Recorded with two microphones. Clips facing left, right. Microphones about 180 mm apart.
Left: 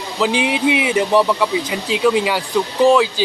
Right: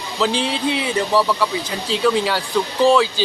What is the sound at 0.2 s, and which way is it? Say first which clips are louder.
Speech: left 3 dB; 10° left (ahead or behind).